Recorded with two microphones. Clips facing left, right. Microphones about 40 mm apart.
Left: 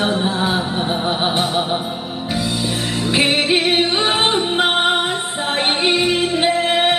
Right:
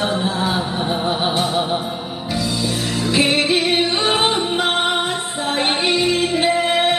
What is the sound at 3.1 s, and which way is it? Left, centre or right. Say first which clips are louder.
Music: left 1 dB; left.